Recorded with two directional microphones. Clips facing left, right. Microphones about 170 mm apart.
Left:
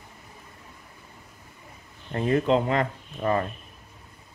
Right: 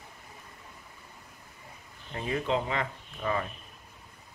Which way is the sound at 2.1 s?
50° left (ahead or behind).